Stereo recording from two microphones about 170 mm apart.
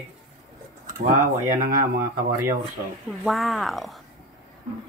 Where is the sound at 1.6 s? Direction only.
55° right (ahead or behind).